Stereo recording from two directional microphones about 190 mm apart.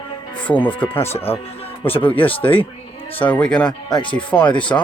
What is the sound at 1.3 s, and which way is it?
Speech, 30° left (ahead or behind).